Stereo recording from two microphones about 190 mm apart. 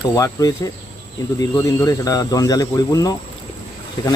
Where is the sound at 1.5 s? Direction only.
15° left (ahead or behind).